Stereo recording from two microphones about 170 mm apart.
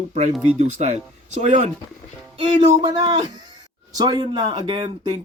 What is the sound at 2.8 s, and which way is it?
Speech, 25° right (ahead or behind).